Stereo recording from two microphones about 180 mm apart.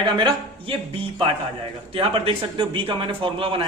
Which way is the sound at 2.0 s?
30° right (ahead or behind).